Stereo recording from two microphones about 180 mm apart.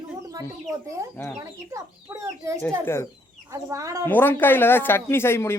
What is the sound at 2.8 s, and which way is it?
Speech, 15° left (ahead or behind).